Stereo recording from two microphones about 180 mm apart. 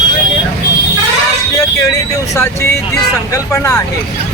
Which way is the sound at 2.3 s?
15° left (ahead or behind).